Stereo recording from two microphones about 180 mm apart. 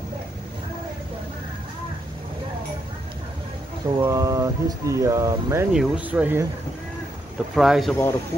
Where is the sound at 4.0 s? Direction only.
15° right (ahead or behind).